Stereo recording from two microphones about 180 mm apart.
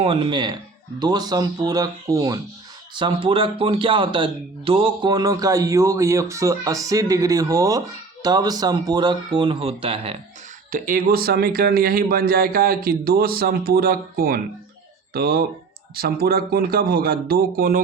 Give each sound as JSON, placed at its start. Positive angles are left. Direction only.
{"t": 0.0, "sound": "a man's voice", "side_deg": -30}
{"t": 10.7, "sound": "speech", "side_deg": -50}